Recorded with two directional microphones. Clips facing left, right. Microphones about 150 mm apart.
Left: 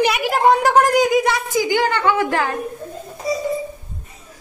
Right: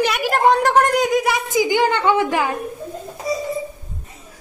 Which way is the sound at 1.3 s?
20° right (ahead or behind).